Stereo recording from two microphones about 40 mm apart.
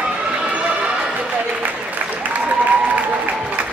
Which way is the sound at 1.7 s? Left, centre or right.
Right.